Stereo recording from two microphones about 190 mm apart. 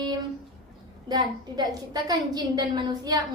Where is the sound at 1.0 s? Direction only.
20° right (ahead or behind).